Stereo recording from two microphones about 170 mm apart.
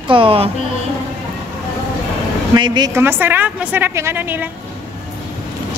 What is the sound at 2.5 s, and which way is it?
Speech, 25° right (ahead or behind).